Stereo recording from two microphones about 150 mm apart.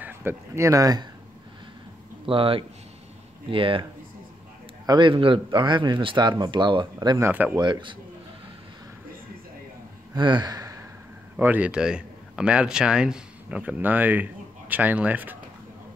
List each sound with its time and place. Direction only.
0.0 s speech: 15° right (ahead or behind)
2.2 s a man's voice: 35° right (ahead or behind)
4.8 s a man's voice: 30° right (ahead or behind); by 7.5 s 15° right (ahead or behind)
7.5 s a man's voice: 30° right (ahead or behind)
10.1 s gasp: 30° right (ahead or behind)
11.3 s a man's voice: 10° right (ahead or behind)